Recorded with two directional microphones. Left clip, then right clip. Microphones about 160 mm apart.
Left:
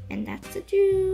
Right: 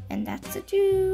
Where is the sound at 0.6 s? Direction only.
35° right (ahead or behind).